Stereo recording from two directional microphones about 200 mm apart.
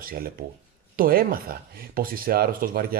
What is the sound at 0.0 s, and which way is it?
Speech, 45° right (ahead or behind).